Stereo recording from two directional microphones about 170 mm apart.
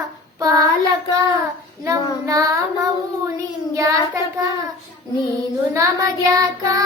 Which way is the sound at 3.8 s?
20° right (ahead or behind).